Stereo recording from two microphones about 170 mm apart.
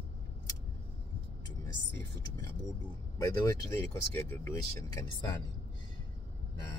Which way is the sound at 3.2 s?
25° left (ahead or behind).